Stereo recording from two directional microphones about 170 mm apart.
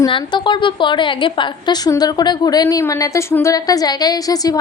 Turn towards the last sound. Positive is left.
turn(degrees=20)  # may be behind; listen again after turning